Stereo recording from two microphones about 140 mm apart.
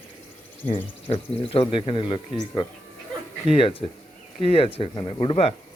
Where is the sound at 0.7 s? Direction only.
40° left (ahead or behind).